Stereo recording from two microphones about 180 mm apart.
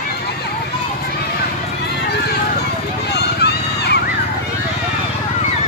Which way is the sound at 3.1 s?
65° left (ahead or behind).